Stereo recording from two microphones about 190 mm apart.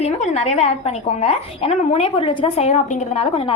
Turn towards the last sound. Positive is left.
turn(degrees=30)  # may be behind; listen again after turning